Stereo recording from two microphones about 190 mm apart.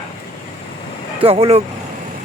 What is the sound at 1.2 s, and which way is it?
Speech, 30° right (ahead or behind).